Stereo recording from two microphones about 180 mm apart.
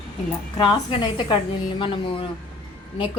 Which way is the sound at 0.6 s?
25° left (ahead or behind).